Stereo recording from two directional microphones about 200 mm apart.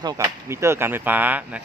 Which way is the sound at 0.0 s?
15° right (ahead or behind).